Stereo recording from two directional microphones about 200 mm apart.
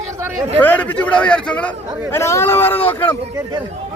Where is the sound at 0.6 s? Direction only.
10° left (ahead or behind).